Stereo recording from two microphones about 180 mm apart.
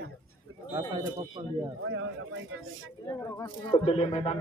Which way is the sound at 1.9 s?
90° right.